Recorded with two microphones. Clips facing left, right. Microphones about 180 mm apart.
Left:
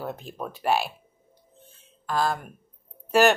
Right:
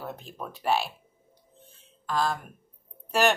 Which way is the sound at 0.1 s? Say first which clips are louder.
Left 4 dB; 5° left (ahead or behind).